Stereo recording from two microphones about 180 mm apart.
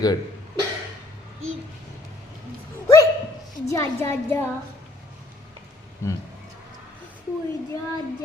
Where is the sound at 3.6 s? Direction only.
15° left (ahead or behind).